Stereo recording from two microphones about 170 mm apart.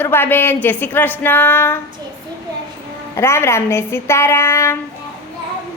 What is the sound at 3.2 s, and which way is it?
Speech, 15° left (ahead or behind).